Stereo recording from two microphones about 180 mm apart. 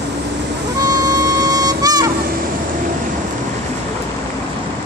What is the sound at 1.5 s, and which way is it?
Vehicle, 20° right (ahead or behind).